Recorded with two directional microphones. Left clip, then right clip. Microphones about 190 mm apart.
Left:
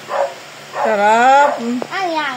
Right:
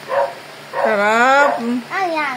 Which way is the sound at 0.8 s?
5° left (ahead or behind).